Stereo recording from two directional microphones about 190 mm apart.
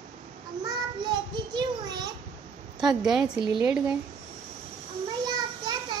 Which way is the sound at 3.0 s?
5° right (ahead or behind).